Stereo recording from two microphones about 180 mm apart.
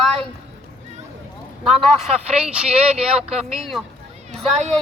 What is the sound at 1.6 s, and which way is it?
Speech, centre (ahead or behind).